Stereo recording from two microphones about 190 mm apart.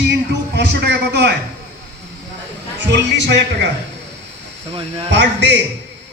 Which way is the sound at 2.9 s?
65° right (ahead or behind).